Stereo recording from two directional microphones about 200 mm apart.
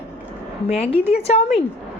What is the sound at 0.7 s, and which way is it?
Speech, 30° left (ahead or behind).